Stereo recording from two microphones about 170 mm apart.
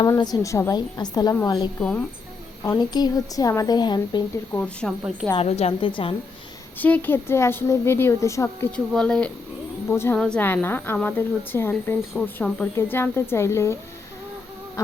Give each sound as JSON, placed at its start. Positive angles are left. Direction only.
{"t": 0.0, "sound": "a woman's voice", "side_deg": 25}
{"t": 1.8, "sound": "a woman's voice", "side_deg": 5}
{"t": 2.6, "sound": "a woman's voice", "side_deg": 20}
{"t": 4.5, "sound": "a woman's voice", "side_deg": 5}
{"t": 5.3, "sound": "a woman's voice", "side_deg": 35}
{"t": 6.7, "sound": "a woman's voice", "side_deg": 10}
{"t": 8.7, "sound": "a woman's voice", "side_deg": 5}